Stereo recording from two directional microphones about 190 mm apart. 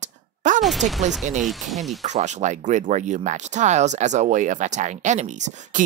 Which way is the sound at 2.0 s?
40° right (ahead or behind).